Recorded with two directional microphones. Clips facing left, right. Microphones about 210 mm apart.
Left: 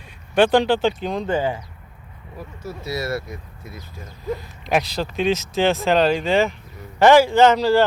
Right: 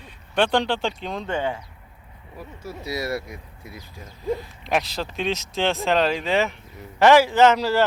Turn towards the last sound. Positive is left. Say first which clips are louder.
# left 3 dB
turn(degrees=-5)  # may be behind; listen again after turning